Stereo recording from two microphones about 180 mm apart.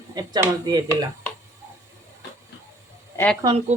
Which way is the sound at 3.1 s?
10° left (ahead or behind).